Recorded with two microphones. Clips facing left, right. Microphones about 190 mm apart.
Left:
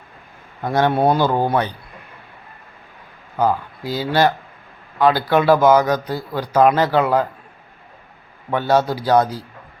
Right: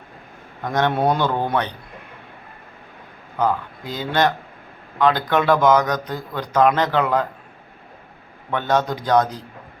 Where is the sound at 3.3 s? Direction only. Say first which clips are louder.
Left 2 dB; 10° left (ahead or behind).